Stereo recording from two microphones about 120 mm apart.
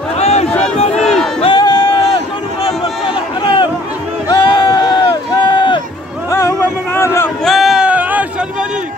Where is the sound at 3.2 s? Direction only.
40° left (ahead or behind).